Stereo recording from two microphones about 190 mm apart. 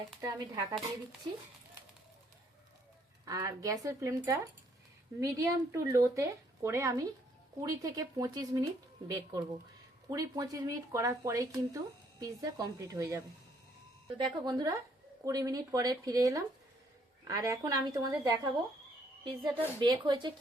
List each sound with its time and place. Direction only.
0.2 s a woman's voice: 20° right (ahead or behind)
3.2 s a woman's voice: 15° right (ahead or behind)